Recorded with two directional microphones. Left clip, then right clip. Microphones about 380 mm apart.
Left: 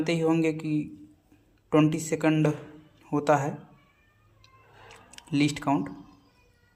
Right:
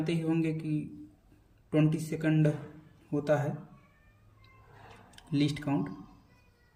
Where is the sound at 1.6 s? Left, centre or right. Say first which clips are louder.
Left 6 dB; centre.